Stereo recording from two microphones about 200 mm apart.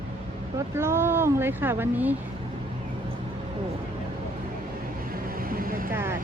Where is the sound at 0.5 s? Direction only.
10° right (ahead or behind).